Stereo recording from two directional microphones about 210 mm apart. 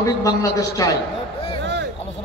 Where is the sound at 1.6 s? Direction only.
55° right (ahead or behind).